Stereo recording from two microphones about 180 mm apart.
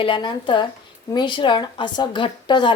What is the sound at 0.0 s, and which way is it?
A woman's voice, 25° left (ahead or behind).